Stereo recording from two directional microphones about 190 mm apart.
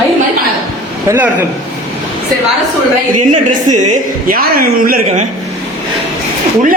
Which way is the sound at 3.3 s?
40° right (ahead or behind).